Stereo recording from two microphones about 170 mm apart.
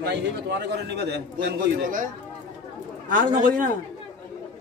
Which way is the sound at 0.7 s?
80° right.